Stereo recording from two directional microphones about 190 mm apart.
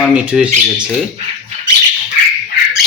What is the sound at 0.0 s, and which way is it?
Speech, 5° right (ahead or behind).